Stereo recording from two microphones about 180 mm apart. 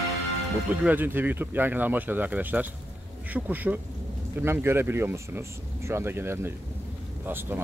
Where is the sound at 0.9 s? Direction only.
10° right (ahead or behind).